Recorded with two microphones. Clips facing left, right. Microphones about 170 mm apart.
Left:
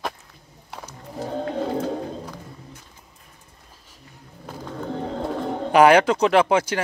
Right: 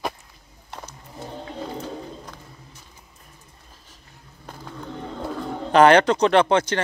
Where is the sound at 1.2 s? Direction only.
55° left (ahead or behind).